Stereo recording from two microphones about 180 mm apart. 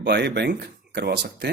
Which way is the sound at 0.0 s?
65° right (ahead or behind).